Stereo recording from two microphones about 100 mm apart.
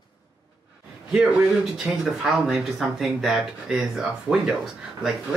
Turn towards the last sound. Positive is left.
turn(degrees=-5)  # may be behind; listen again after turning